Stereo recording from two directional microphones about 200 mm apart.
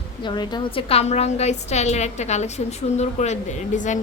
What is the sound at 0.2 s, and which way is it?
A woman's voice, 20° left (ahead or behind).